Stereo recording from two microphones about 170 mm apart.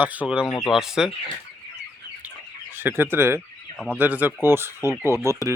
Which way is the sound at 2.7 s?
10° right (ahead or behind).